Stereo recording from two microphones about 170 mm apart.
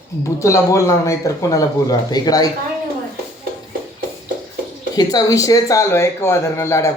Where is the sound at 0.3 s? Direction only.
20° left (ahead or behind).